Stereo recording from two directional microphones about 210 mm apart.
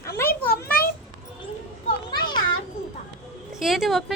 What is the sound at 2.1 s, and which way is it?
Children playing, 20° left (ahead or behind).